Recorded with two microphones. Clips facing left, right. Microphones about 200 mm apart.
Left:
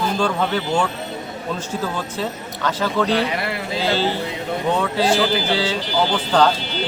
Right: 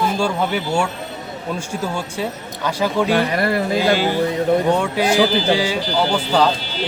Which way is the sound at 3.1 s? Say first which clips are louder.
Right 3 dB; 50° right (ahead or behind).